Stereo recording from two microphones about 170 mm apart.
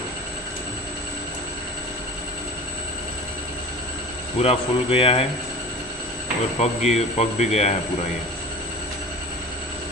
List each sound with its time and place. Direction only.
4.4 s speech: 35° left (ahead or behind)
6.6 s speech: 40° left (ahead or behind)